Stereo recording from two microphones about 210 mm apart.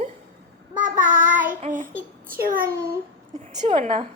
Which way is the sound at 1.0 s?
35° right (ahead or behind).